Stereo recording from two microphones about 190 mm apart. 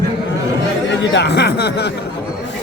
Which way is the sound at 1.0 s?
70° left (ahead or behind).